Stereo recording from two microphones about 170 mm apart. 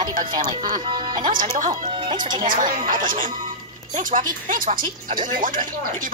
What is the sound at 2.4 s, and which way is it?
Speech, 55° right (ahead or behind).